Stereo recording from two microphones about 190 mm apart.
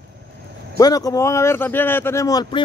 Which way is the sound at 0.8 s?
20° left (ahead or behind).